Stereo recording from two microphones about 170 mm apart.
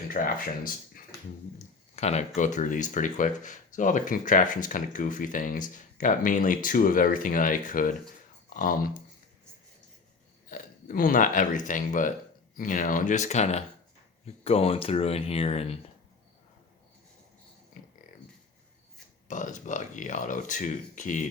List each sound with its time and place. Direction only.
0.1 s speech: 55° left (ahead or behind)
2.0 s speech: 40° left (ahead or behind); by 8.9 s 55° left (ahead or behind)
10.5 s speech: 55° left (ahead or behind); by 15.8 s 35° left (ahead or behind)
19.3 s speech: 50° left (ahead or behind)